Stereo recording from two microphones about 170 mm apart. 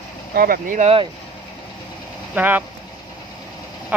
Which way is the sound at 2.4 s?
10° right (ahead or behind).